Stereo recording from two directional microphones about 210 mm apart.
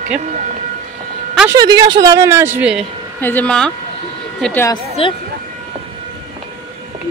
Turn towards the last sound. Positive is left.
turn(degrees=25)  # may be behind; listen again after turning